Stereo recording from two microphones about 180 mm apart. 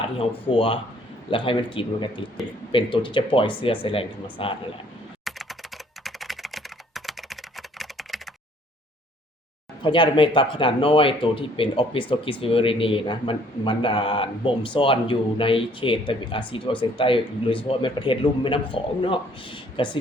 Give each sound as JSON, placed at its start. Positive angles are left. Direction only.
{"t": 0.0, "sound": "speech", "side_deg": 30}
{"t": 5.2, "sound": "computer keyboard", "side_deg": 0}
{"t": 9.8, "sound": "speech", "side_deg": 25}